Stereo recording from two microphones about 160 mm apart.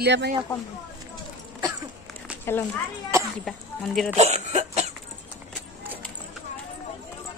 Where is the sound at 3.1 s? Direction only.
20° right (ahead or behind).